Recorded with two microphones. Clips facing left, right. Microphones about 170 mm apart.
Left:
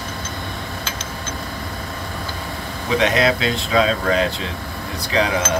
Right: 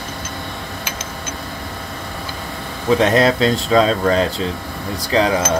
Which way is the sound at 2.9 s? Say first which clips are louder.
Right 3 dB; 40° right (ahead or behind).